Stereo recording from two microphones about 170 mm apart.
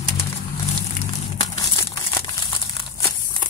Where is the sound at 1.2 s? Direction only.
20° left (ahead or behind).